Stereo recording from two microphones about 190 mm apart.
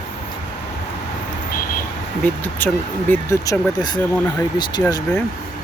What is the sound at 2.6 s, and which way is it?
Speech, 10° left (ahead or behind).